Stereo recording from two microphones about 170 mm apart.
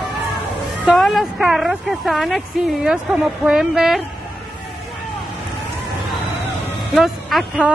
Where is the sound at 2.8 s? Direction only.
5° right (ahead or behind).